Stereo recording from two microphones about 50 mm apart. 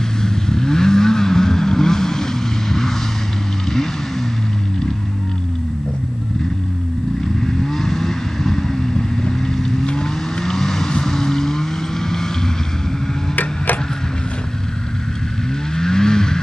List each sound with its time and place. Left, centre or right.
0.2 s vehicle: centre
7.4 s vehicle: centre
15.7 s vehicle: centre